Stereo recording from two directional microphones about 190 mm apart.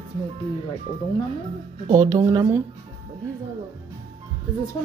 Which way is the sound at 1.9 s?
20° right (ahead or behind).